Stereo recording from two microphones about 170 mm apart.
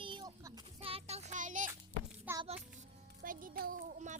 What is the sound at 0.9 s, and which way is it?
Child singing, 40° right (ahead or behind).